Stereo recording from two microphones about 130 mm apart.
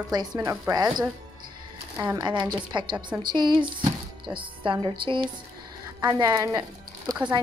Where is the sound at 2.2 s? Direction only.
35° right (ahead or behind).